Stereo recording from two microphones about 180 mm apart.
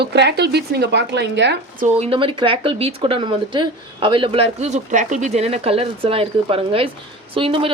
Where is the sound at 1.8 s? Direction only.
35° right (ahead or behind).